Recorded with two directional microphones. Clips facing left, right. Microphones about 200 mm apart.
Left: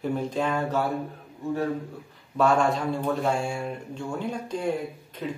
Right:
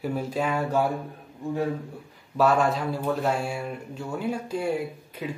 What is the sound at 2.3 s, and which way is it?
Speech, 5° right (ahead or behind).